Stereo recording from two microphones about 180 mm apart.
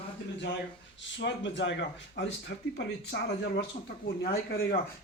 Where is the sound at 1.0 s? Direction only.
90° left; by 3.5 s 70° left (ahead or behind).